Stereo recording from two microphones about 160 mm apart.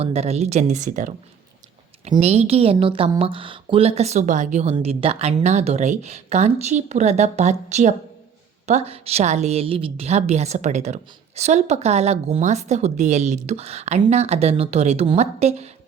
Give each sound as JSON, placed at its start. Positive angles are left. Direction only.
{"t": 0.0, "sound": "a woman's voice", "side_deg": -40}